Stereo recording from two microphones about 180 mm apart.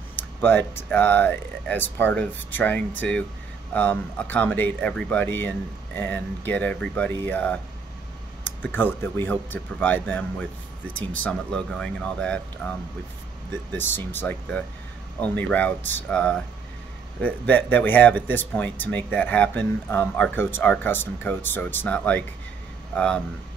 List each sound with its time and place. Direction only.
0.1 s speech: 10° left (ahead or behind)